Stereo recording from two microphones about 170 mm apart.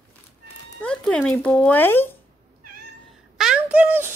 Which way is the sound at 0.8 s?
5° left (ahead or behind).